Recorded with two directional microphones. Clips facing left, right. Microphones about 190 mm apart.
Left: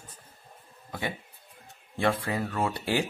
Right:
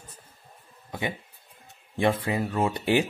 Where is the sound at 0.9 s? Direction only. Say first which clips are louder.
Right 2 dB; 20° right (ahead or behind).